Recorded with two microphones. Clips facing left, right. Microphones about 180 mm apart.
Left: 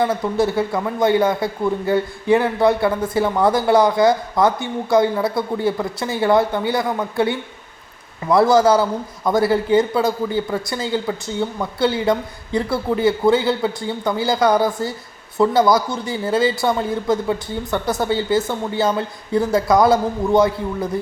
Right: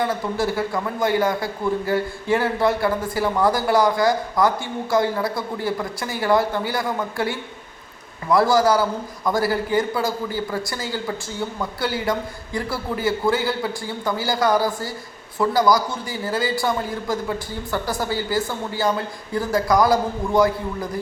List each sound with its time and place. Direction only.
0.3 s a man's voice: 25° left (ahead or behind)